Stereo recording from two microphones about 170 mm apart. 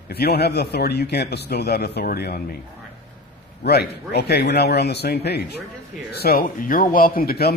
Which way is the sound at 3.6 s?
75° left (ahead or behind).